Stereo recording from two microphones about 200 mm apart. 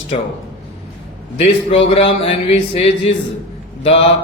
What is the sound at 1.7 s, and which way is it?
Speech, 30° left (ahead or behind).